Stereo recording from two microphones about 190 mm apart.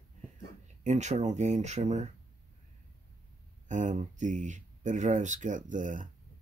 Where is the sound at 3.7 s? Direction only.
40° right (ahead or behind).